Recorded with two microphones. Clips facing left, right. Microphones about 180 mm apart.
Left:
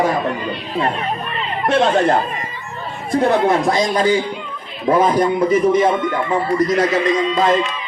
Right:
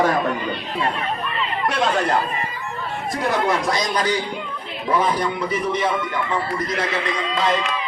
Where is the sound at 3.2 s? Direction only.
55° left (ahead or behind).